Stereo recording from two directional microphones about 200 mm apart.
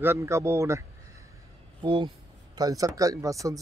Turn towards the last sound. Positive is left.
turn(degrees=-15)  # may be behind; listen again after turning